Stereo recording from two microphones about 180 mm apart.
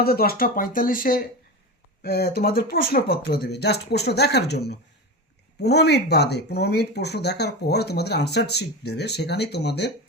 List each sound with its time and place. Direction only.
0.0 s speech: 55° left (ahead or behind)
2.0 s speech: 60° left (ahead or behind)